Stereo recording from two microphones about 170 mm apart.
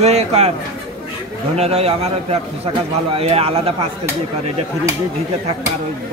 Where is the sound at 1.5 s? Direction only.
40° right (ahead or behind).